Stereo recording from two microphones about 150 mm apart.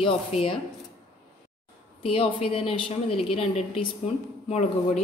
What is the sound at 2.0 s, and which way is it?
Speech, 40° left (ahead or behind).